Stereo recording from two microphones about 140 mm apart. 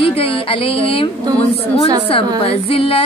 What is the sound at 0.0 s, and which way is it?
Speech, 40° left (ahead or behind).